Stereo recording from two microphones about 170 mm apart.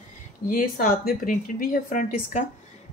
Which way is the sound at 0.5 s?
55° left (ahead or behind).